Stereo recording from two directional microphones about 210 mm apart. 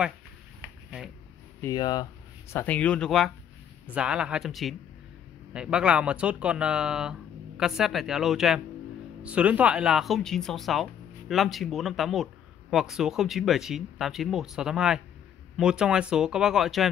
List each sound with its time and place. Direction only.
0.6 s a sound: 5° right (ahead or behind)
1.6 s speech: 20° left (ahead or behind)
2.5 s speech: 5° left (ahead or behind)